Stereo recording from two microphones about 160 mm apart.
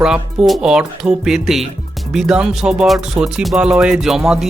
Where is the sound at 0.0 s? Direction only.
5° right (ahead or behind).